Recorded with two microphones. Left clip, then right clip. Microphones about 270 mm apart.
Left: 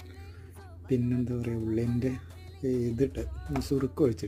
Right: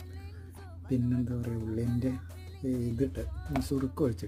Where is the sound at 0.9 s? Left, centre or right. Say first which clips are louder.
Left 3 dB; centre.